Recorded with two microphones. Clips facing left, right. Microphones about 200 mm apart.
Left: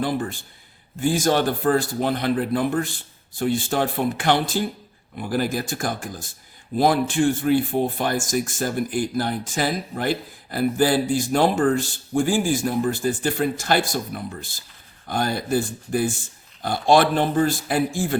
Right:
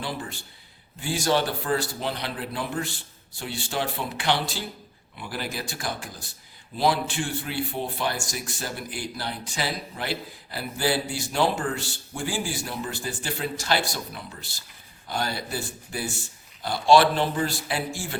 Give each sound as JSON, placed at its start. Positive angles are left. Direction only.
{"t": 0.0, "sound": "speech", "side_deg": 50}